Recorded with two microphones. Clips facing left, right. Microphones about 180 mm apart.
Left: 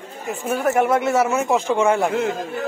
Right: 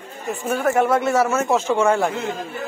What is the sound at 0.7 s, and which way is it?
A man's voice, 20° left (ahead or behind).